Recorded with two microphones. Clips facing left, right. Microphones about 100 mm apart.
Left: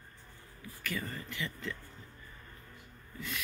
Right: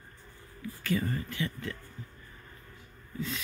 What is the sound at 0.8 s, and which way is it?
Speech, 15° right (ahead or behind).